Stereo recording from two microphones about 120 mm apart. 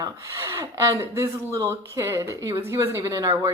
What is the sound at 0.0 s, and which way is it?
Speech, 25° right (ahead or behind).